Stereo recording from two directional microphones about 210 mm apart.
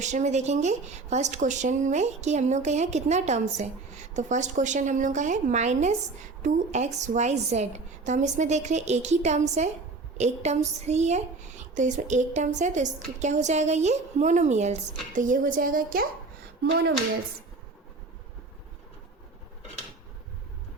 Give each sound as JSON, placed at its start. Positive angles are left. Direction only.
{"t": 0.0, "sound": "speech", "side_deg": -35}